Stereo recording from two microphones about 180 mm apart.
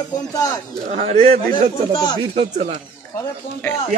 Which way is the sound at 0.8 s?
40° right (ahead or behind).